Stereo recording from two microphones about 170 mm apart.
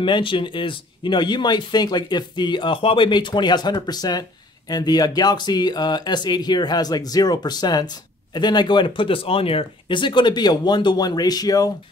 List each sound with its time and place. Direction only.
0.0 s speech: 30° left (ahead or behind)